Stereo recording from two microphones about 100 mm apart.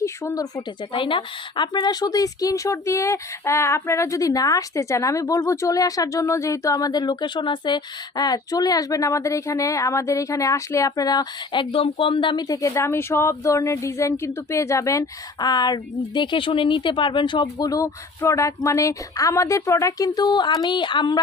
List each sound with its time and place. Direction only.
0.0 s speech: 35° left (ahead or behind)
0.9 s a woman's voice: 55° left (ahead or behind)
11.6 s speech: 65° left (ahead or behind)
12.5 s a woman's voice: 30° left (ahead or behind); by 21.2 s 50° left (ahead or behind)